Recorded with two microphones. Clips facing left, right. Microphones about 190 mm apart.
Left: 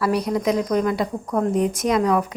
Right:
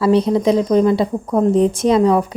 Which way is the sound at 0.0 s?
25° right (ahead or behind).